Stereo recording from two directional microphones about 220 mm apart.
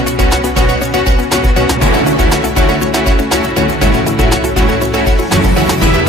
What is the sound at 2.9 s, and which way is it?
Music, centre (ahead or behind).